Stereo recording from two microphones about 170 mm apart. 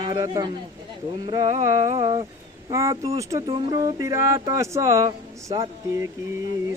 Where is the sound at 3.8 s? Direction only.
20° right (ahead or behind).